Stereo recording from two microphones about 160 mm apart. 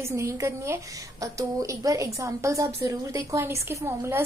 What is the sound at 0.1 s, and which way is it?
A woman's voice, 20° right (ahead or behind).